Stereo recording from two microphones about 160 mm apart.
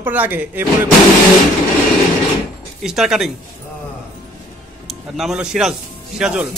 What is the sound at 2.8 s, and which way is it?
Speech, 5° right (ahead or behind).